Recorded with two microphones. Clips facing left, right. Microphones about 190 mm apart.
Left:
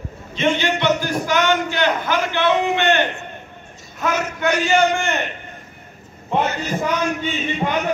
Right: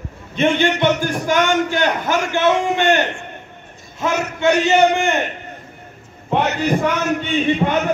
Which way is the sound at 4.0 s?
25° right (ahead or behind).